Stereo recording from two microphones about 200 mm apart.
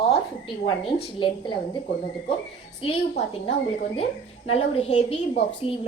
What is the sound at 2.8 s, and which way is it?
Speech, 25° left (ahead or behind).